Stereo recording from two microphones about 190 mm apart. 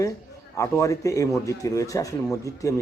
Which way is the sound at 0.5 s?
15° left (ahead or behind).